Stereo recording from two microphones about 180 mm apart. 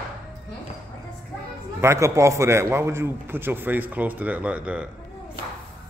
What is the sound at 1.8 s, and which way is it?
A man's voice, 15° right (ahead or behind).